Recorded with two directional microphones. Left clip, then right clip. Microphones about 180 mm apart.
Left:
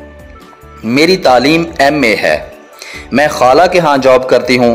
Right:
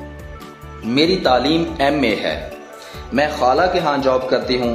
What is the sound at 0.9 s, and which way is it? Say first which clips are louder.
Speech: left 7 dB; 40° left (ahead or behind).